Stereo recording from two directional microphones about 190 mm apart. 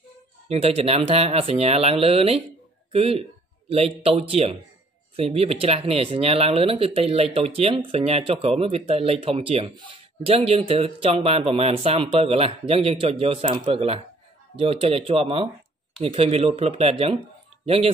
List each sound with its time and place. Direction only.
0.5 s a man's voice: 30° right (ahead or behind)